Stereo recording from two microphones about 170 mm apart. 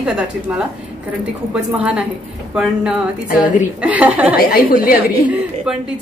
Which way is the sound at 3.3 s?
55° left (ahead or behind).